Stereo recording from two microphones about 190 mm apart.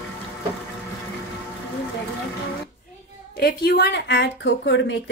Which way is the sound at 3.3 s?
55° left (ahead or behind).